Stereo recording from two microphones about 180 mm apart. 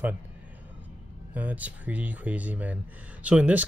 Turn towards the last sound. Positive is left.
turn(degrees=-5)  # may be behind; listen again after turning